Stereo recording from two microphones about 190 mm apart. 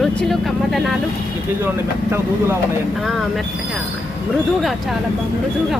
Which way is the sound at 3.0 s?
Centre (ahead or behind).